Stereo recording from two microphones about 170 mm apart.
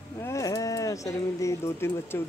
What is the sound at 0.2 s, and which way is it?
Speech, 20° left (ahead or behind).